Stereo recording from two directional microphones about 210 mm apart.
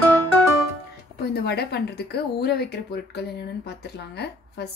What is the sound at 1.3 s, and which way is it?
Speech, 50° left (ahead or behind).